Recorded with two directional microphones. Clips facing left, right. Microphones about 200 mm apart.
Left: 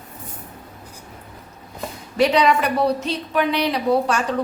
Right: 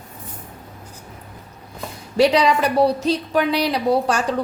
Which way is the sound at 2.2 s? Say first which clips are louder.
Right 1 dB; 30° right (ahead or behind).